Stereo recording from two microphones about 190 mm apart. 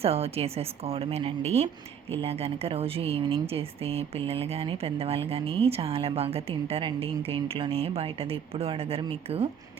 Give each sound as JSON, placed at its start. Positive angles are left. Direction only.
{"t": 0.0, "sound": "speech", "side_deg": -30}